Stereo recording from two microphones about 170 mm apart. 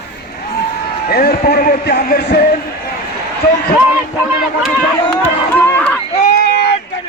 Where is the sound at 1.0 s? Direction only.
65° left (ahead or behind).